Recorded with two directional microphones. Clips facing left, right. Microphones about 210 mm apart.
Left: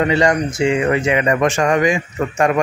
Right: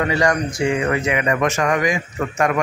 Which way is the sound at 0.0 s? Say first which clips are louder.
Left 3 dB; 25° left (ahead or behind).